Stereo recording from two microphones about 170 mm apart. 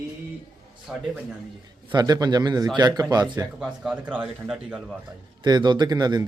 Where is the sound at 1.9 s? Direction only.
25° right (ahead or behind).